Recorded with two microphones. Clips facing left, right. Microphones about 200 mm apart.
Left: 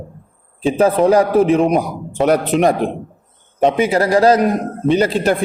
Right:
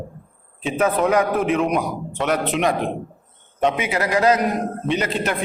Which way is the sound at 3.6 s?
35° left (ahead or behind).